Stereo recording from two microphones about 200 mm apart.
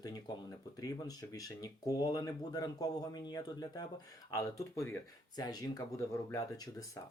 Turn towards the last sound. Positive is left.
turn(degrees=15)  # may be behind; listen again after turning